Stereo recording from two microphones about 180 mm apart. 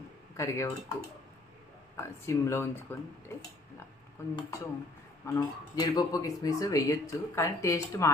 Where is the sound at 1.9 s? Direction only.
15° left (ahead or behind).